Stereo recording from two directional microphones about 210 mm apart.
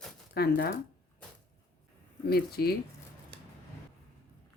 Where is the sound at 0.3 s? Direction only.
45° left (ahead or behind).